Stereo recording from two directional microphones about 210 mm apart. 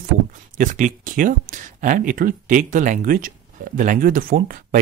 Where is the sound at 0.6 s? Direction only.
35° right (ahead or behind).